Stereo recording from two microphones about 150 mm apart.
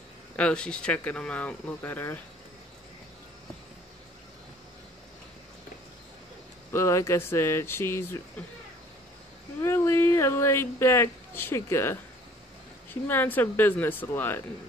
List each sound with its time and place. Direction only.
0.4 s speech: 5° left (ahead or behind)
6.7 s speech: 20° left (ahead or behind)
9.6 s speech: 15° left (ahead or behind)
13.1 s speech: 15° left (ahead or behind)